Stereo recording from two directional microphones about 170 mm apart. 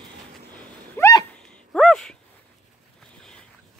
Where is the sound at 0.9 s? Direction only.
20° left (ahead or behind).